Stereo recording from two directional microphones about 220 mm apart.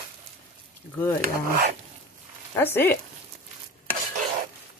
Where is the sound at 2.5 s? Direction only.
10° left (ahead or behind).